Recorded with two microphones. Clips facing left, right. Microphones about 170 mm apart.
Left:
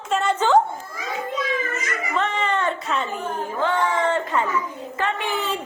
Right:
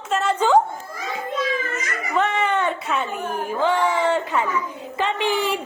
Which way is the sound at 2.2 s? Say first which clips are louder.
Right 3 dB; 10° right (ahead or behind).